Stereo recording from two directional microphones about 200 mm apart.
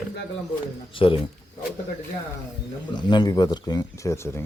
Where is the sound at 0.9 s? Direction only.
25° left (ahead or behind).